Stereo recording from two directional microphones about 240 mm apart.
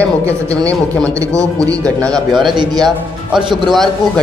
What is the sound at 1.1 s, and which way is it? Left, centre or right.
Speech, centre.